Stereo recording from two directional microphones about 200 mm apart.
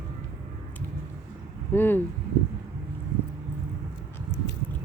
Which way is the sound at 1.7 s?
10° left (ahead or behind).